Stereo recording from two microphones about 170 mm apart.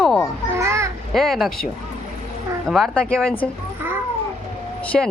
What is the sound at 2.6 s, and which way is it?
Speech, centre (ahead or behind).